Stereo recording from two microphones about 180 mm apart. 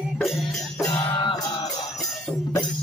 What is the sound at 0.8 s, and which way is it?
Music, 25° left (ahead or behind).